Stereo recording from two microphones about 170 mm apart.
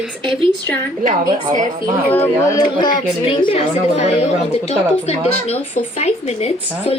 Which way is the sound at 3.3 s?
35° left (ahead or behind).